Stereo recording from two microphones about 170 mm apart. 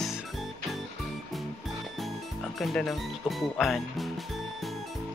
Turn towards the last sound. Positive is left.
turn(degrees=0)  # may be behind; listen again after turning